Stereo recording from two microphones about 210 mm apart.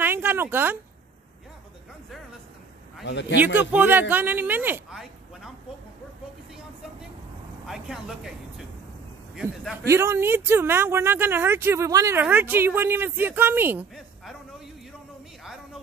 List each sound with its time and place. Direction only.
0.0 s a sound: 10° right (ahead or behind)
3.1 s speech: 55° left (ahead or behind)
3.3 s speech: 10° right (ahead or behind)
7.6 s speech: centre (ahead or behind)
9.3 s speech: centre (ahead or behind)
9.8 s speech: 15° right (ahead or behind)